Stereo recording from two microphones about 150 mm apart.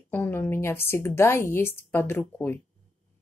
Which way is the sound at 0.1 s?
10° left (ahead or behind).